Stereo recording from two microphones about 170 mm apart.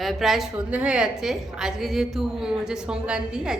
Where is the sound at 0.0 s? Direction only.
Centre (ahead or behind).